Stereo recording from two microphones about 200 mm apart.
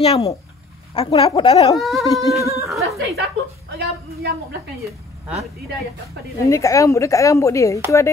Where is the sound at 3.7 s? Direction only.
50° right (ahead or behind).